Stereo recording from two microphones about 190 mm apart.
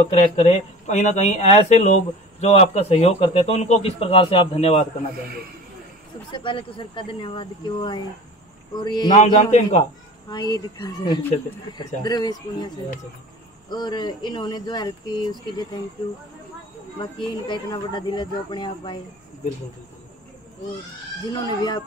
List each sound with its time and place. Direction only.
0.0 s a man's voice: 35° left (ahead or behind)
6.3 s speech: 25° left (ahead or behind)
9.4 s a man's voice: 40° left (ahead or behind)
10.3 s speech: 20° left (ahead or behind)
17.0 s speech: 25° left (ahead or behind)
21.3 s speech: 20° left (ahead or behind)